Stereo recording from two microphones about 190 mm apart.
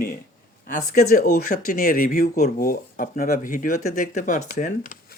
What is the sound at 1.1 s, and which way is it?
Speech, 40° left (ahead or behind).